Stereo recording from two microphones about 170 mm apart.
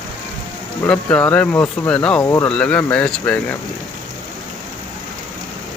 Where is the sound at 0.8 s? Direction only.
10° left (ahead or behind).